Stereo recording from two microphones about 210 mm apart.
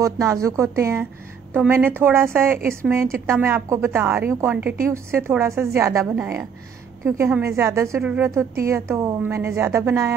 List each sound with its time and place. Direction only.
0.0 s a woman's voice: 15° right (ahead or behind)